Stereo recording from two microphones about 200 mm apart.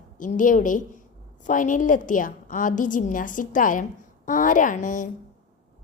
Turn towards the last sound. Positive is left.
turn(degrees=40)  # may be behind; listen again after turning